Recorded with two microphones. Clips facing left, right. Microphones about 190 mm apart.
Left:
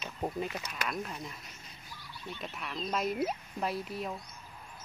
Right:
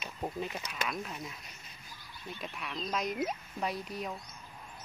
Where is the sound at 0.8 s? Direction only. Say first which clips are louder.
Left 1 dB; centre (ahead or behind).